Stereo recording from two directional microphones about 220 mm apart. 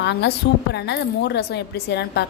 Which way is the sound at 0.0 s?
50° left (ahead or behind).